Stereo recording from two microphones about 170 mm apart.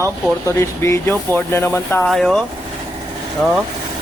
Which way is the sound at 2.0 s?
Centre (ahead or behind).